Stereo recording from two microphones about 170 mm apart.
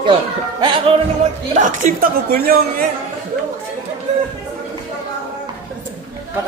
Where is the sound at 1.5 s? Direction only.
50° right (ahead or behind).